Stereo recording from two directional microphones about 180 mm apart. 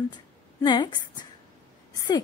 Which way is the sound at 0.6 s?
25° left (ahead or behind).